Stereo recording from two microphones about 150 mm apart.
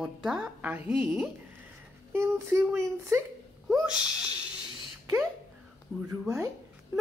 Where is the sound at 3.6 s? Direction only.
5° right (ahead or behind).